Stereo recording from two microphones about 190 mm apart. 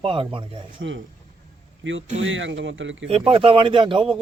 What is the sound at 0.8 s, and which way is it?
Speech, 80° right.